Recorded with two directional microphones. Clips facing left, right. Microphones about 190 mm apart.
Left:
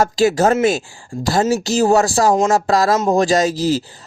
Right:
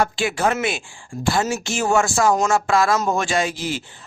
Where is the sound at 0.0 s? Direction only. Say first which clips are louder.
Left 6 dB; 40° left (ahead or behind).